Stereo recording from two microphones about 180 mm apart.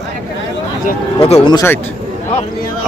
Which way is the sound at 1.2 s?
35° left (ahead or behind).